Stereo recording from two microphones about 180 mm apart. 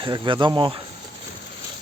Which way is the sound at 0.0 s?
25° right (ahead or behind).